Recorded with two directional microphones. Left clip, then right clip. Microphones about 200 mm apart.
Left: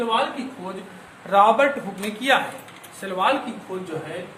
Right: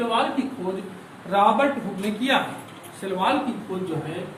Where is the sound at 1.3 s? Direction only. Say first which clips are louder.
Left 3 dB; 45° left (ahead or behind).